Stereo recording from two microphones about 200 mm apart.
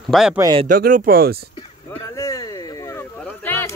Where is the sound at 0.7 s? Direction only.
45° right (ahead or behind).